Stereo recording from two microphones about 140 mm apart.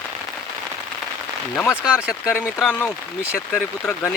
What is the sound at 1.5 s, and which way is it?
Speech, 15° left (ahead or behind).